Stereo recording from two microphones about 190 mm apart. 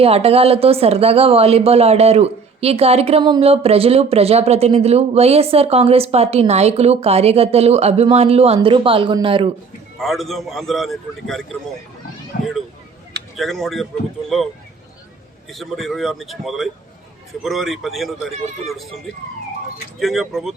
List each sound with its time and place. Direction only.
0.0 s a woman's voice: 30° right (ahead or behind)
10.0 s a man's voice: centre (ahead or behind)
12.3 s speech: 55° left (ahead or behind)
13.3 s a man's voice: centre (ahead or behind)
15.4 s a man's voice: centre (ahead or behind)
20.0 s a man's voice: centre (ahead or behind)